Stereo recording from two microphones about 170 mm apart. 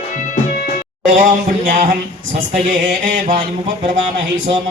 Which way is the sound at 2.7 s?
55° right (ahead or behind).